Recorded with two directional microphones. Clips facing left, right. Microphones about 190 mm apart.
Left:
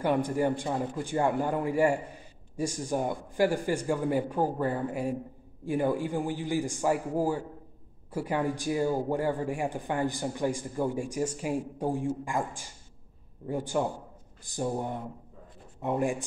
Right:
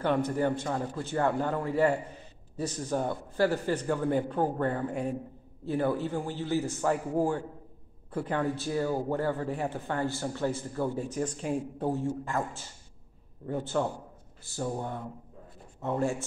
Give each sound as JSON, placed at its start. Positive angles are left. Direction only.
{"t": 0.0, "sound": "a man's voice", "side_deg": 10}